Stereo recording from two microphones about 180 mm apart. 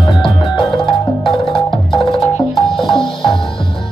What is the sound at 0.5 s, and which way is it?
Music, 25° left (ahead or behind).